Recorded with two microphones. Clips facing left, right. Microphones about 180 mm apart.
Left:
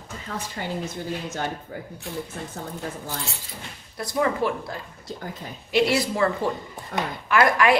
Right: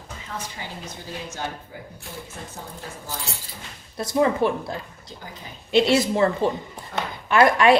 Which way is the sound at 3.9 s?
25° right (ahead or behind).